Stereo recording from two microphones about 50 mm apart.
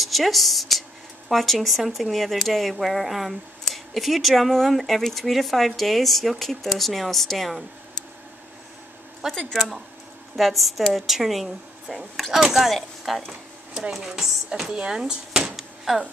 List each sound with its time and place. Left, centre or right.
0.0 s speech: centre
9.2 s speech: centre
13.3 s a sound: centre
13.9 s speech: centre